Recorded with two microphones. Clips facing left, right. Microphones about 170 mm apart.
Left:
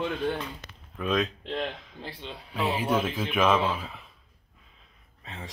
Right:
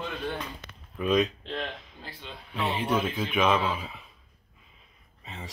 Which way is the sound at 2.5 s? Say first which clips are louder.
Left 1 dB; centre (ahead or behind).